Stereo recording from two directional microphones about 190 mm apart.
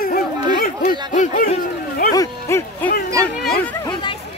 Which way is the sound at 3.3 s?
55° left (ahead or behind).